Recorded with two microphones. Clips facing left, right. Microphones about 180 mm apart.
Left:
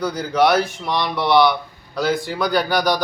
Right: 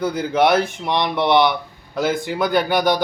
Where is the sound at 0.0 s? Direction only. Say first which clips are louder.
Even; 20° right (ahead or behind).